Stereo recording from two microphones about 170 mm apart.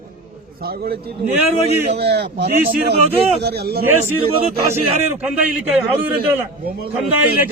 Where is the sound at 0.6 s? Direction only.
65° right (ahead or behind).